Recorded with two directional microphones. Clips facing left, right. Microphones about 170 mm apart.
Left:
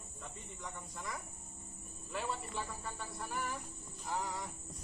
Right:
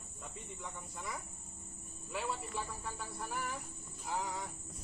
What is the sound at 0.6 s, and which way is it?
Speech, 10° right (ahead or behind).